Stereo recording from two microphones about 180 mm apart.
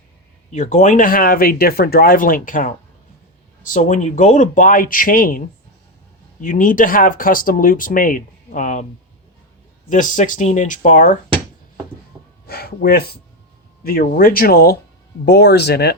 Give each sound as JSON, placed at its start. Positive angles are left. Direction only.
{"t": 0.5, "sound": "speech", "side_deg": 40}
{"t": 6.4, "sound": "speech", "side_deg": 50}
{"t": 9.9, "sound": "speech", "side_deg": 45}
{"t": 12.1, "sound": "a sound", "side_deg": 0}
{"t": 12.5, "sound": "speech", "side_deg": 60}